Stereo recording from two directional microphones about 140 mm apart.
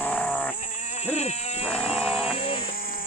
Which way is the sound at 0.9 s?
55° left (ahead or behind).